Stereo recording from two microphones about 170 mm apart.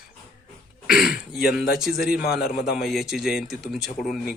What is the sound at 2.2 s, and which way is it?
Speech, 65° left (ahead or behind).